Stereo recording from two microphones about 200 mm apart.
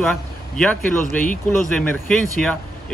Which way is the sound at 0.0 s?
5° left (ahead or behind).